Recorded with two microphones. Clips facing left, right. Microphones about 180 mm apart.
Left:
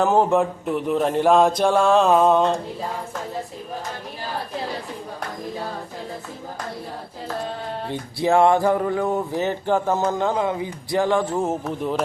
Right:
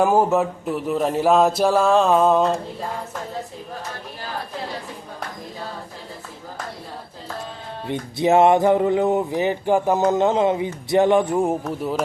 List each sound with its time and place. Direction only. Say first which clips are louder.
0.0 s speech: even; 10° right (ahead or behind)
7.9 s music: right 3 dB; 20° right (ahead or behind)
11.6 s speech: even; 5° right (ahead or behind)